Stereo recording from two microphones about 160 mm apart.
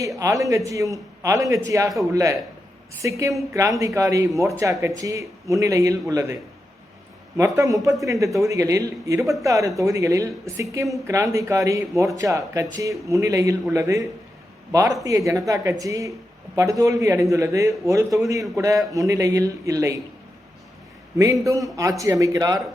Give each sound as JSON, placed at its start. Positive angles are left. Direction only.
{"t": 0.2, "sound": "speech", "side_deg": -20}
{"t": 7.3, "sound": "speech", "side_deg": -20}
{"t": 21.2, "sound": "speech", "side_deg": -20}